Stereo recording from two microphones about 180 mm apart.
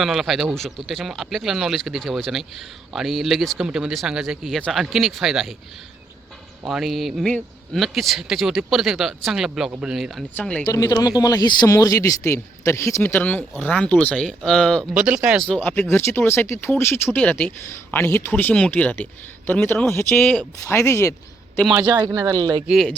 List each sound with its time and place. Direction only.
0.0 s speech: centre (ahead or behind)
6.7 s speech: centre (ahead or behind)
10.7 s speech: 20° left (ahead or behind); by 14.8 s 5° left (ahead or behind)
14.9 s speech: 5° right (ahead or behind); by 21.6 s 15° left (ahead or behind)
21.8 s speech: 20° right (ahead or behind)
22.6 s speech: 5° right (ahead or behind)